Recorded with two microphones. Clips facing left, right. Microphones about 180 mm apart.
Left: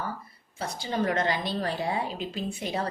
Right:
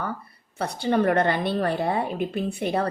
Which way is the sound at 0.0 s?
65° right (ahead or behind).